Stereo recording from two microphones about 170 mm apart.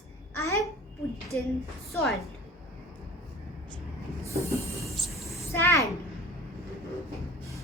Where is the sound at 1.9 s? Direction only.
Centre (ahead or behind).